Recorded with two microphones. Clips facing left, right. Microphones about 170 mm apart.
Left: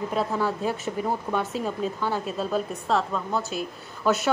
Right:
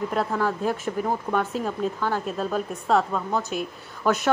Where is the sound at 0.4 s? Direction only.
10° left (ahead or behind).